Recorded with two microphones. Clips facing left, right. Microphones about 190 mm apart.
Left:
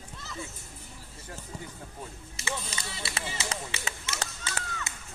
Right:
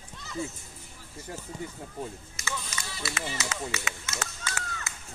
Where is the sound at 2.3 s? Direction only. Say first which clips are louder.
Left 6 dB; 30° left (ahead or behind).